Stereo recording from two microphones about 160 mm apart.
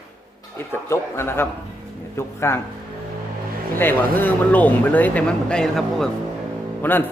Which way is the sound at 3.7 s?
10° left (ahead or behind).